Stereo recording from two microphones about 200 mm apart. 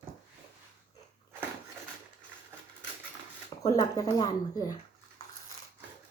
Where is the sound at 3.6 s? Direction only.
20° left (ahead or behind).